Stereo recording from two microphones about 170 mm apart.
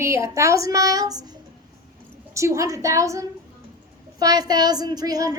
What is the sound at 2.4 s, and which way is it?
A woman's voice, 15° right (ahead or behind).